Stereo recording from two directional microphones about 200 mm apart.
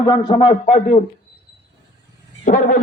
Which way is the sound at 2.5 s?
40° left (ahead or behind).